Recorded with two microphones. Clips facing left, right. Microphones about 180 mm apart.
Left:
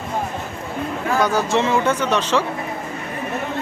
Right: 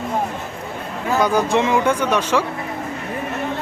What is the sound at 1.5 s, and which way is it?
Speech, 15° right (ahead or behind).